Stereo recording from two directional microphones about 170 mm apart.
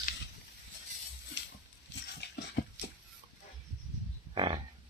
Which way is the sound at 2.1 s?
75° left (ahead or behind).